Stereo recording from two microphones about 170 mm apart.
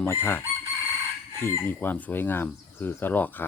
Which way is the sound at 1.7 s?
10° left (ahead or behind).